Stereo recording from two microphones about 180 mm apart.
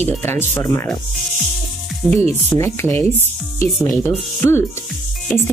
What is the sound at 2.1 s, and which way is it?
Speech, 15° left (ahead or behind).